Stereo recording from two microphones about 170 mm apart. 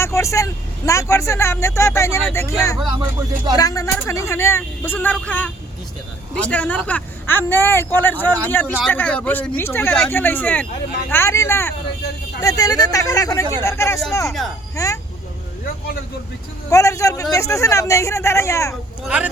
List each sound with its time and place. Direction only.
0.0 s speech: 15° left (ahead or behind)
2.8 s speech: 25° right (ahead or behind)
3.5 s speech: 20° left (ahead or behind)
16.6 s speech: 20° left (ahead or behind)
19.0 s speech: 5° right (ahead or behind)